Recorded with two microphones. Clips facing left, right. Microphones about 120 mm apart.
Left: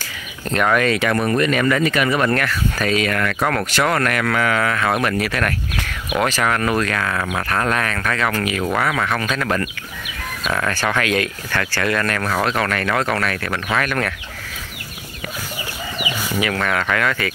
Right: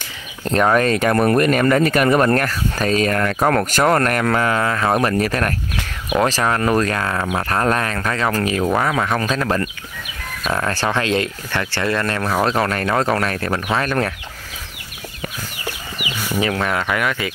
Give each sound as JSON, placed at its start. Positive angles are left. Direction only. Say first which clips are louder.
{"t": 0.5, "sound": "speech", "louder": "right 2 dB", "side_deg": -35}
{"t": 8.6, "sound": "speech", "louder": "right 1 dB", "side_deg": -20}
{"t": 9.0, "sound": "speech", "louder": "right 2 dB", "side_deg": -35}
{"t": 12.4, "sound": "speech", "louder": "right 2 dB", "side_deg": -30}
{"t": 16.5, "sound": "speech", "louder": "even", "side_deg": -20}